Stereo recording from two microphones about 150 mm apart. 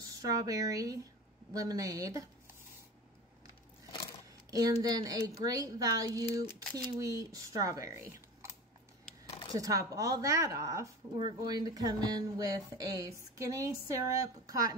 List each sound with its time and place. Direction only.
0.1 s speech: 25° right (ahead or behind)
4.5 s speech: 25° right (ahead or behind)
9.2 s a sound: 35° left (ahead or behind)
9.6 s speech: 20° right (ahead or behind)